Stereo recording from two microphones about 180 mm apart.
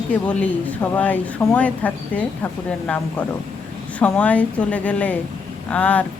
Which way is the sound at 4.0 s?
10° left (ahead or behind).